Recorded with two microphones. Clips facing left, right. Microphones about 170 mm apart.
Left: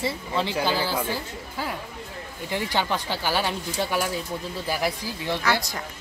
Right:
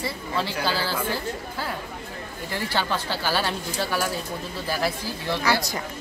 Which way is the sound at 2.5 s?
15° left (ahead or behind).